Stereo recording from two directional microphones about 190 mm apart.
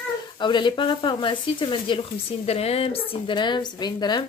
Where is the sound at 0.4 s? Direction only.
25° left (ahead or behind).